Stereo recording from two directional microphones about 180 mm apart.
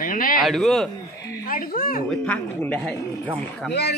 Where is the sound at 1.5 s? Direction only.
50° left (ahead or behind).